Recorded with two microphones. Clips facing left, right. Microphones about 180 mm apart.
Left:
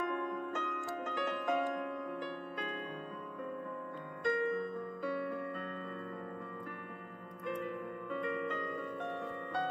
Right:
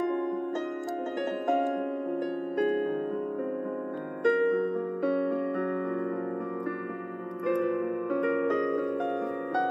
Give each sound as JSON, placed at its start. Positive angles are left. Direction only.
{"t": 4.2, "sound": "music", "side_deg": -65}
{"t": 7.4, "sound": "music", "side_deg": -75}